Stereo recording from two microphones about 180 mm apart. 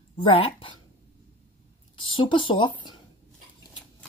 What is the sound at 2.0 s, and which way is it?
Speech, 25° left (ahead or behind).